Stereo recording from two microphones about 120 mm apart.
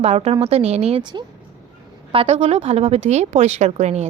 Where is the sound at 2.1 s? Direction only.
65° right (ahead or behind).